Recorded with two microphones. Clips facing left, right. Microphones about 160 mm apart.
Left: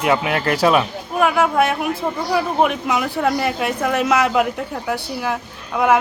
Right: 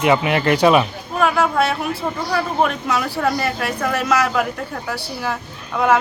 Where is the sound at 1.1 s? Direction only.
10° left (ahead or behind).